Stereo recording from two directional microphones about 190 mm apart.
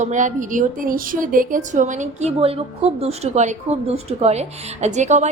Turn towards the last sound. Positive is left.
turn(degrees=-40)  # may be behind; listen again after turning